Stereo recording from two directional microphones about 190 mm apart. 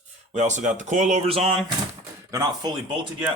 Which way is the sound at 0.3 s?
40° right (ahead or behind).